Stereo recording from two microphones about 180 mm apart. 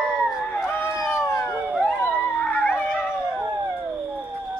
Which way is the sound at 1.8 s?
10° left (ahead or behind).